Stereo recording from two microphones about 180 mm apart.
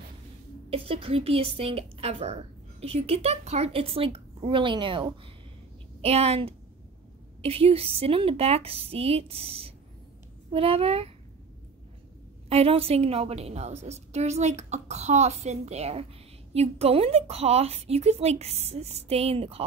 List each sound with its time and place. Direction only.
0.7 s a woman's voice: 30° right (ahead or behind)
12.4 s a woman's voice: 35° right (ahead or behind)